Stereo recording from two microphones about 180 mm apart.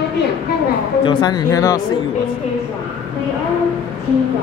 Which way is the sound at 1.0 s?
25° left (ahead or behind).